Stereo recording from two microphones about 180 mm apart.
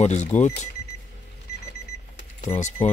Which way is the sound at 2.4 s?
35° left (ahead or behind).